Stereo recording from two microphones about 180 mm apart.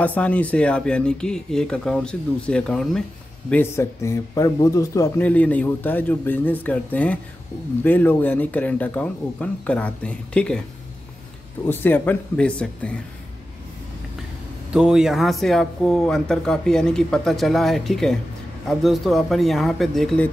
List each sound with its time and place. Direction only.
0.0 s speech: 10° left (ahead or behind)
11.6 s speech: 10° left (ahead or behind)
14.7 s speech: 5° right (ahead or behind)